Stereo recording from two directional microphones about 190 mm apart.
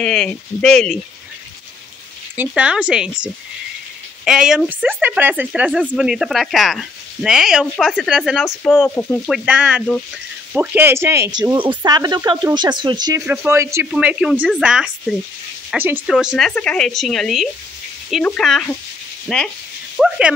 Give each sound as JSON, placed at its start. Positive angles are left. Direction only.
{"t": 0.0, "sound": "speech", "side_deg": 5}
{"t": 2.3, "sound": "speech", "side_deg": -10}
{"t": 9.3, "sound": "speech", "side_deg": -5}
{"t": 11.4, "sound": "speech", "side_deg": -25}
{"t": 13.2, "sound": "speech", "side_deg": -10}